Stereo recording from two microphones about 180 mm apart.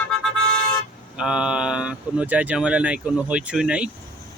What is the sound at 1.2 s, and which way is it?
Speech, 5° right (ahead or behind).